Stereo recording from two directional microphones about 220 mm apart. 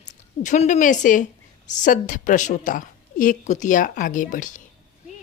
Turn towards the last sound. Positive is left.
turn(degrees=35)  # may be behind; listen again after turning